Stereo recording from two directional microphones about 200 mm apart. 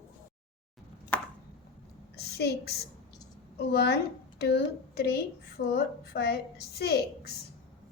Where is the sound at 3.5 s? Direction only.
55° left (ahead or behind).